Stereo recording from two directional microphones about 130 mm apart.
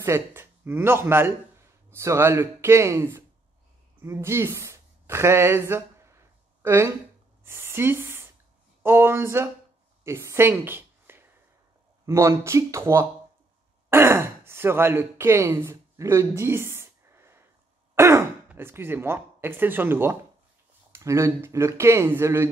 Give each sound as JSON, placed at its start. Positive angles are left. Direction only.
{"t": 0.0, "sound": "speech", "side_deg": -20}
{"t": 4.0, "sound": "a sound", "side_deg": -20}
{"t": 7.4, "sound": "speech", "side_deg": -20}